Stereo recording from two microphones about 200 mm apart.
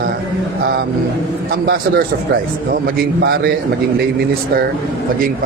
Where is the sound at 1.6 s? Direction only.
45° right (ahead or behind).